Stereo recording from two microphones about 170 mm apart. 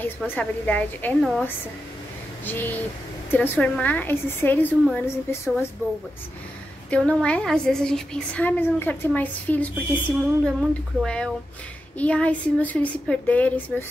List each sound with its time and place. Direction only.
0.3 s a woman's voice: 10° left (ahead or behind)
2.4 s a woman's voice: 10° left (ahead or behind)
6.9 s a woman's voice: 5° left (ahead or behind)